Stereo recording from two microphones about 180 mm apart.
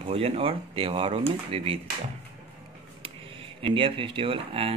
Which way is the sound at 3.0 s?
30° right (ahead or behind).